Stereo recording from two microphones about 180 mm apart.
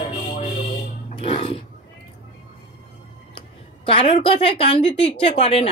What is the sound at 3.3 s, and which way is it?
Speech, 30° left (ahead or behind).